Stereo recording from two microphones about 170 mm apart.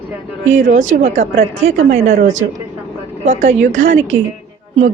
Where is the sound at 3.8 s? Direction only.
90° right.